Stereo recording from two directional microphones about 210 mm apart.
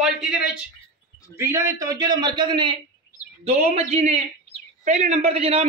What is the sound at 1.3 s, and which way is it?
A man's voice, 15° right (ahead or behind).